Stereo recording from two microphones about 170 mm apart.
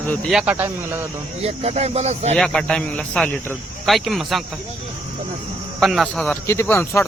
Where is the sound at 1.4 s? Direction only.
40° right (ahead or behind).